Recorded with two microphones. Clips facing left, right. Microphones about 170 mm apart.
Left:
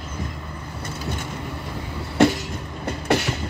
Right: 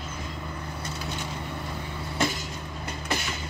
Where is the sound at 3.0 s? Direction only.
65° left (ahead or behind).